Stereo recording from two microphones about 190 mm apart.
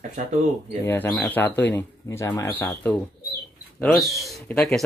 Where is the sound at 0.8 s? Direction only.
10° left (ahead or behind).